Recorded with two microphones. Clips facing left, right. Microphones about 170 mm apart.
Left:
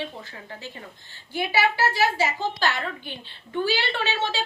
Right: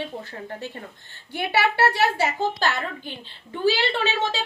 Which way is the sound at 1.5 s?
65° right (ahead or behind).